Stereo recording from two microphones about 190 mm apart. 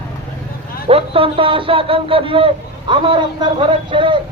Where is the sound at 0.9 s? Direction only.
30° right (ahead or behind).